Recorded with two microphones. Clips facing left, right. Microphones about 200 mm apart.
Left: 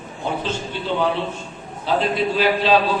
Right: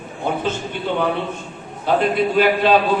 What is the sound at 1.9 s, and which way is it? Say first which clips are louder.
Speech: right 3 dB; 55° right (ahead or behind).